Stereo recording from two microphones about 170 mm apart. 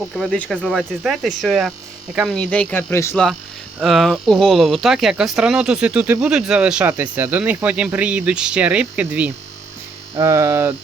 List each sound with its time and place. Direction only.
0.2 s speech: 5° left (ahead or behind)
3.8 s speech: centre (ahead or behind)